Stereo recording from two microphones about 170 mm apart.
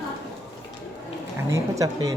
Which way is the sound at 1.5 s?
20° right (ahead or behind).